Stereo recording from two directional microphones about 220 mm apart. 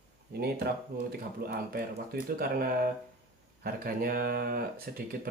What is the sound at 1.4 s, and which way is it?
Speech, 45° right (ahead or behind).